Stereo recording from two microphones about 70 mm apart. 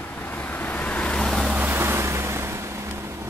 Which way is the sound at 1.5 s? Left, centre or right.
Right.